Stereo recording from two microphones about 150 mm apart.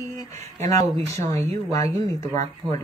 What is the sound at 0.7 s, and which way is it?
Speech, 20° left (ahead or behind).